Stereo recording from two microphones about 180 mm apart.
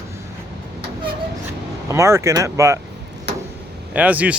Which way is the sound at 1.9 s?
15° right (ahead or behind).